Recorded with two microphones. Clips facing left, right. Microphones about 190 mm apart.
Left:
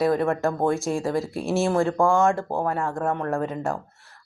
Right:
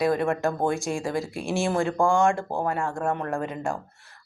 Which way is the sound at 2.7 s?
35° left (ahead or behind).